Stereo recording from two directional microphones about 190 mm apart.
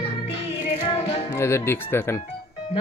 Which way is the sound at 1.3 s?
15° left (ahead or behind).